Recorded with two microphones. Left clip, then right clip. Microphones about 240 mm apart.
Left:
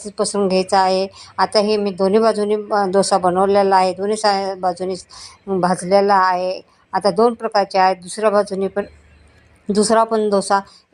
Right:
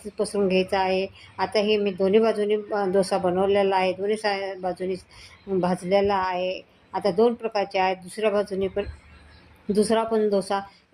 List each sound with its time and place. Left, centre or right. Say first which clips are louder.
0.0 s a woman's voice: left 6 dB; centre